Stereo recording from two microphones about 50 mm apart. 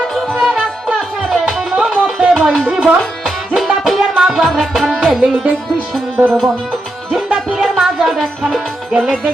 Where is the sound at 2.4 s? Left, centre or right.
Centre.